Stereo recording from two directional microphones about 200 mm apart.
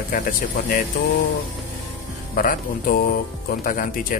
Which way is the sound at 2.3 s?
45° left (ahead or behind).